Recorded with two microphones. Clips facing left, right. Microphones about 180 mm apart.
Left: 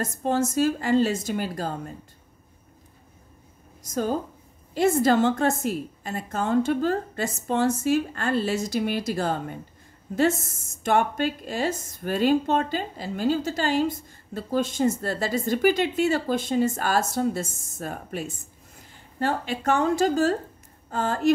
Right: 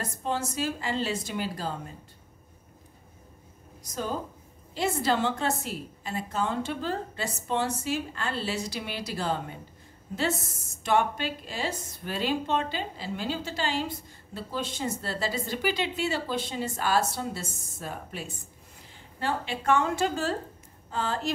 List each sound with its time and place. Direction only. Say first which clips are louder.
0.0 s a woman's voice: left 7 dB; 45° left (ahead or behind)
3.8 s a woman's voice: left 6 dB; 45° left (ahead or behind)